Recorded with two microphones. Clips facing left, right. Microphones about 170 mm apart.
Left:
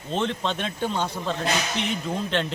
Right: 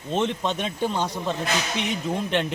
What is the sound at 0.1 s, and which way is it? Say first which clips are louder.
Speech: right 2 dB; 15° right (ahead or behind).